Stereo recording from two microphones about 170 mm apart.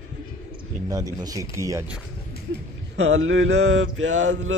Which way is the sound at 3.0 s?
90° right.